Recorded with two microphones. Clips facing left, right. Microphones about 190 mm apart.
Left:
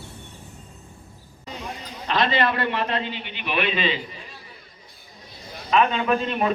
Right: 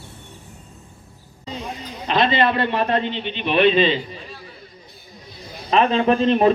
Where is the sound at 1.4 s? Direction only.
20° right (ahead or behind).